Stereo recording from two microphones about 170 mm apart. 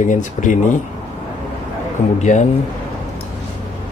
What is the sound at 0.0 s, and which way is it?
Speech, 50° left (ahead or behind).